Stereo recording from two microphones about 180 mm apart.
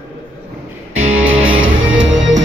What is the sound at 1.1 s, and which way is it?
Music, 10° right (ahead or behind).